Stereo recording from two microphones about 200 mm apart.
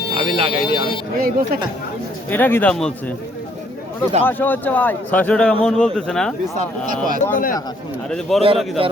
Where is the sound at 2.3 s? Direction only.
10° left (ahead or behind).